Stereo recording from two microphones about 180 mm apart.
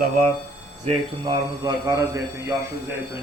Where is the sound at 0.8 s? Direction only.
25° right (ahead or behind).